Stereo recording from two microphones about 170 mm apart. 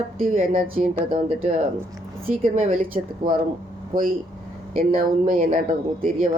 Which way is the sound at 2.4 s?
45° right (ahead or behind).